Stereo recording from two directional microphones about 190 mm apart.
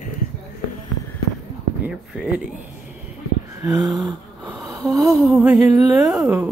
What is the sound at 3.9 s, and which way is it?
Wheeze, 20° right (ahead or behind).